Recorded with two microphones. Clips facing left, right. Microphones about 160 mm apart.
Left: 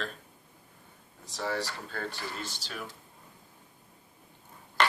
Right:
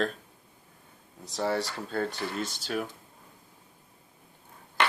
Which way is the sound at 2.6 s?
50° right (ahead or behind).